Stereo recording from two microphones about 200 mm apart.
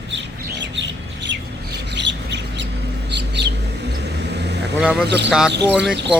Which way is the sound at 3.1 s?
60° right (ahead or behind).